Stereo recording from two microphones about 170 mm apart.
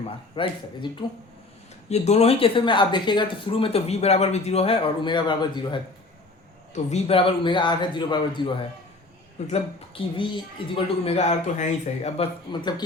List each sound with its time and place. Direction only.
0.0 s speech: 30° left (ahead or behind)
1.9 s speech: 40° left (ahead or behind)